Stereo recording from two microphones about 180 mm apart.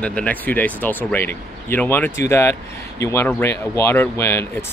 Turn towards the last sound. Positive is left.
turn(degrees=15)  # may be behind; listen again after turning